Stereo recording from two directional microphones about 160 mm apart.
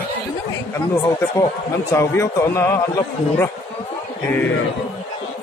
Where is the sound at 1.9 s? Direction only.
20° left (ahead or behind).